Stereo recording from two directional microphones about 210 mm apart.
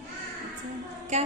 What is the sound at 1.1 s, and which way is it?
Speech, 35° right (ahead or behind).